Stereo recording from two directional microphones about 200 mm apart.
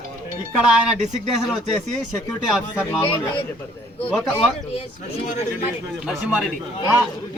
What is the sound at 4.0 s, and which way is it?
Speech, 5° left (ahead or behind).